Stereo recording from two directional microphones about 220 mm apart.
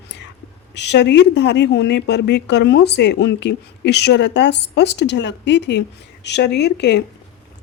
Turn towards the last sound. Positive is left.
turn(degrees=50)  # may be behind; listen again after turning